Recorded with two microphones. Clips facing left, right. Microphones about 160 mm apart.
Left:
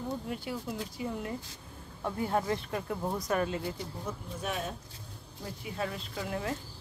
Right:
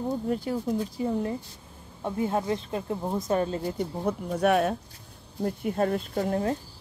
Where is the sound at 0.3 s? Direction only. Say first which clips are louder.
Right 9 dB; 40° right (ahead or behind).